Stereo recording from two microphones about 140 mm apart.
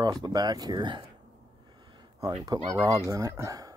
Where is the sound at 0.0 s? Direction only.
30° right (ahead or behind).